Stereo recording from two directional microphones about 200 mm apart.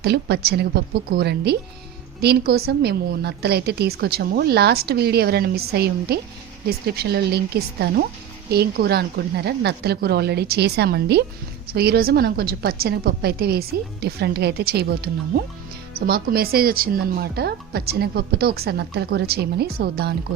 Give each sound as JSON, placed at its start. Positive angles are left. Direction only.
{"t": 0.0, "sound": "a woman's voice", "side_deg": -55}